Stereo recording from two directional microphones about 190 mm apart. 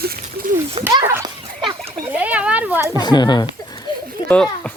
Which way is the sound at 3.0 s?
20° left (ahead or behind).